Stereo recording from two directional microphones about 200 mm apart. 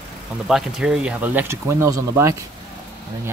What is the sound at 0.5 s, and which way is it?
Speech, centre (ahead or behind).